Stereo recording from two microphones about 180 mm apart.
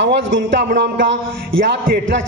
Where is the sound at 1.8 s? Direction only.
70° right (ahead or behind).